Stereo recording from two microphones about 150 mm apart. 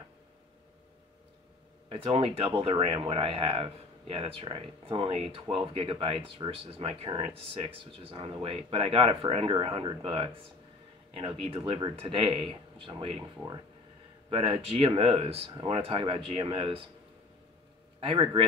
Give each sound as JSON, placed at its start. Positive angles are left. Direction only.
{"t": 1.9, "sound": "speech", "side_deg": -40}
{"t": 18.0, "sound": "speech", "side_deg": -35}